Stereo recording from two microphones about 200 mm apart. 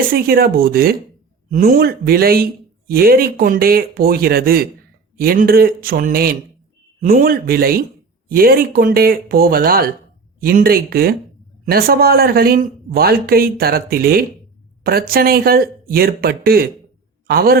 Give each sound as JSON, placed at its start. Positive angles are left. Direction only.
{"t": 0.1, "sound": "a man's voice", "side_deg": -50}